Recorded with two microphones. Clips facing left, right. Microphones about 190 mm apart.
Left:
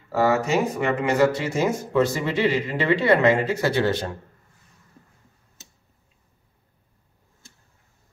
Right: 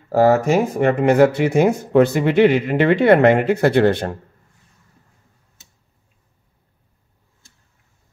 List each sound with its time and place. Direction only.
0.1 s speech: 50° right (ahead or behind)